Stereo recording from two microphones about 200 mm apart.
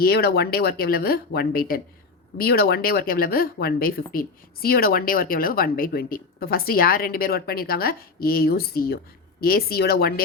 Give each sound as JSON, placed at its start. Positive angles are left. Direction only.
{"t": 0.0, "sound": "speech", "side_deg": 50}